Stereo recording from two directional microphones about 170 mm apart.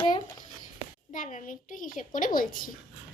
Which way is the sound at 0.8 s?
50° left (ahead or behind).